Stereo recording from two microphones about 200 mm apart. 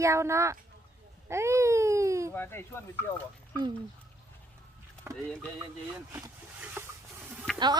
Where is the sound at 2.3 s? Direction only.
10° left (ahead or behind).